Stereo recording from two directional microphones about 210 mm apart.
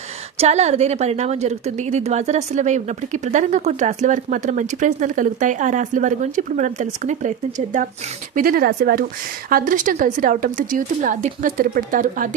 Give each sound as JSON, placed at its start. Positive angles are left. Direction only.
{"t": 0.4, "sound": "a woman's voice", "side_deg": -30}